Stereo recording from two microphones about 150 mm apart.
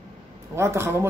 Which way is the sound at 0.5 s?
15° right (ahead or behind).